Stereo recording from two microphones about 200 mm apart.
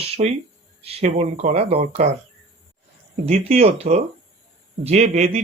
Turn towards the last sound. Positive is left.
turn(degrees=-30)  # may be behind; listen again after turning